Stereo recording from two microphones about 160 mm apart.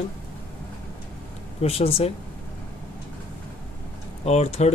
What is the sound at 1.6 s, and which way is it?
Speech, 40° left (ahead or behind).